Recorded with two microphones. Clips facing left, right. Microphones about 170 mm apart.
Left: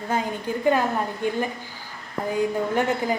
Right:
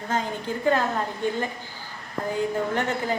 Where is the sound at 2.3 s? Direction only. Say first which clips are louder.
Left 2 dB; 15° left (ahead or behind).